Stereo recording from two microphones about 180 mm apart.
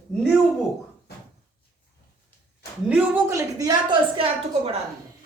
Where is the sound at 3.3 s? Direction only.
20° right (ahead or behind).